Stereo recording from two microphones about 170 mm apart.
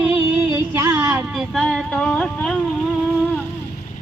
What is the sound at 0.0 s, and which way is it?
Music, 5° right (ahead or behind).